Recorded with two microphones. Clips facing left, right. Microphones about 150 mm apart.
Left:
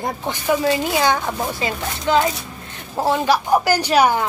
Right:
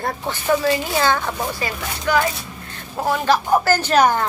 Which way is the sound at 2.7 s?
25° left (ahead or behind).